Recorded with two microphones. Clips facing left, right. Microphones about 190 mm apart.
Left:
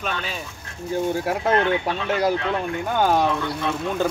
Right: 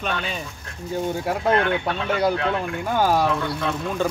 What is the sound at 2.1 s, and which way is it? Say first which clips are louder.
Speech: even; centre (ahead or behind).